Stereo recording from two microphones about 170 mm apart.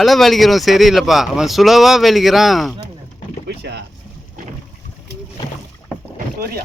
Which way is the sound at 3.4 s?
90° right.